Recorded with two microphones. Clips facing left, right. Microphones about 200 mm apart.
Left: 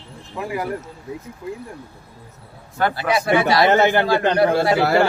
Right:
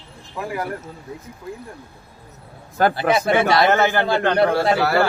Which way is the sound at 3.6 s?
20° left (ahead or behind).